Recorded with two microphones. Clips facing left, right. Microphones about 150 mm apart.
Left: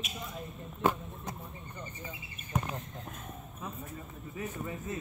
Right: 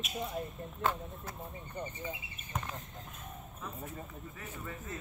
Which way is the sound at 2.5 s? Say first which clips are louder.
Left 5 dB; centre (ahead or behind).